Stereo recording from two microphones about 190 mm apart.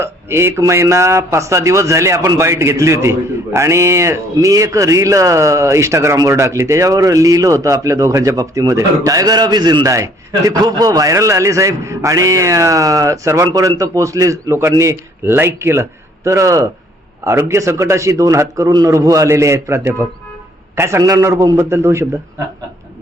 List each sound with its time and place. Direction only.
0.0 s a man's voice: 15° right (ahead or behind)